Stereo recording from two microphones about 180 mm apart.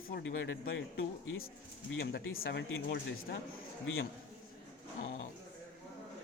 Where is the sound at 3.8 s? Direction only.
90° left.